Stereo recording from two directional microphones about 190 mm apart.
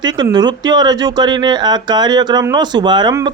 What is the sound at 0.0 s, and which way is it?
Speech, 20° right (ahead or behind).